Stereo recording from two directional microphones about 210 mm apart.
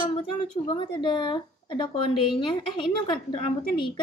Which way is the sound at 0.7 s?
25° left (ahead or behind).